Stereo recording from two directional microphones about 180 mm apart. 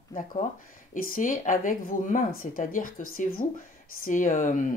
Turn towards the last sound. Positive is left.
turn(degrees=45)  # may be behind; listen again after turning